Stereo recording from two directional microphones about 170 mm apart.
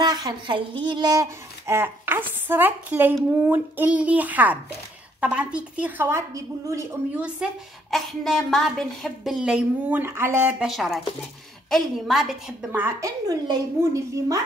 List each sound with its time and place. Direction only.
0.0 s a woman's voice: 25° right (ahead or behind)
7.2 s a woman's voice: 5° right (ahead or behind)
10.7 s a woman's voice: centre (ahead or behind)
12.8 s a woman's voice: 20° right (ahead or behind)